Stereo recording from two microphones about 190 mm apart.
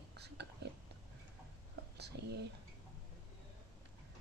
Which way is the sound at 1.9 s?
60° right (ahead or behind).